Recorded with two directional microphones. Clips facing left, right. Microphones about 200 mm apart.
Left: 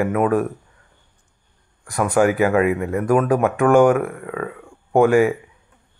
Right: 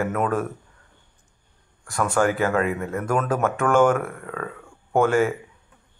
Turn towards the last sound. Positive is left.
turn(degrees=15)  # may be behind; listen again after turning